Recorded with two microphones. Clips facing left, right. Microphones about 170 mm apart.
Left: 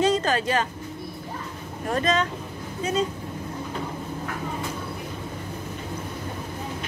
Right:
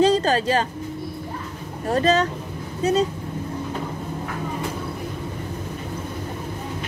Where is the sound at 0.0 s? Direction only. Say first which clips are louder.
Right 4 dB; 30° right (ahead or behind).